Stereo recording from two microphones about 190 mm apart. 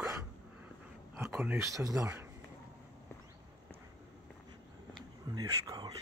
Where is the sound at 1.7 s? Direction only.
20° right (ahead or behind).